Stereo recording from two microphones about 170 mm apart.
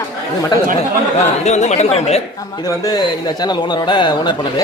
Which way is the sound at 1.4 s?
40° left (ahead or behind).